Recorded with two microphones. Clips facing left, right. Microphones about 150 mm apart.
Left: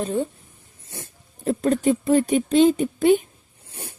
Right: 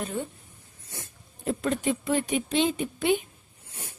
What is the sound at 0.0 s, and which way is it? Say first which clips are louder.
Speech: left 8 dB; 30° left (ahead or behind).